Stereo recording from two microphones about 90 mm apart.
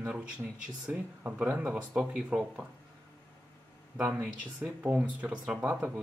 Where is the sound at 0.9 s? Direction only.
15° right (ahead or behind).